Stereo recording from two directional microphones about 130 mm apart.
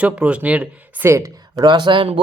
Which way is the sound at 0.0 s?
10° right (ahead or behind).